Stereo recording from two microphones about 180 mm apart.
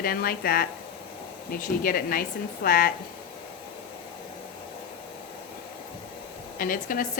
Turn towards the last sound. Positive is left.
turn(degrees=50)  # may be behind; listen again after turning